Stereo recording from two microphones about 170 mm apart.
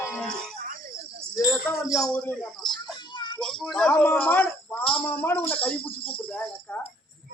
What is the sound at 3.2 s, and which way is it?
Child singing, 25° left (ahead or behind).